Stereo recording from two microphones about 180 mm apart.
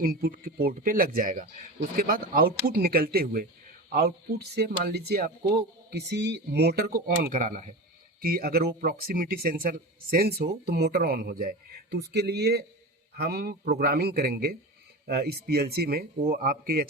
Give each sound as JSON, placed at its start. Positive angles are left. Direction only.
{"t": 0.0, "sound": "speech", "side_deg": -55}
{"t": 5.9, "sound": "speech", "side_deg": -75}
{"t": 8.2, "sound": "speech", "side_deg": -55}